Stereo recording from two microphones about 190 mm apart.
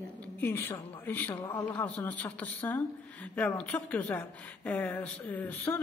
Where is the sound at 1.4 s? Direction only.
20° left (ahead or behind).